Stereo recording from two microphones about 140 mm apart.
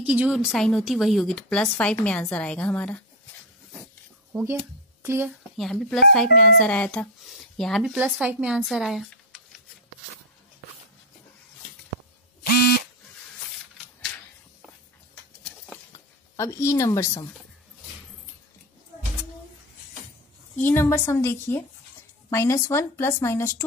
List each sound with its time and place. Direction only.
0.0 s speech: 10° right (ahead or behind); by 3.0 s 10° left (ahead or behind)
4.3 s a woman's voice: 10° right (ahead or behind)
5.6 s speech: 5° left (ahead or behind)
12.4 s buzzer: 90° left
16.3 s speech: 20° left (ahead or behind)
20.5 s speech: 15° left (ahead or behind)